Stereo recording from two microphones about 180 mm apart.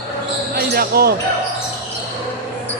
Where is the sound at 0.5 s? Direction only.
55° right (ahead or behind).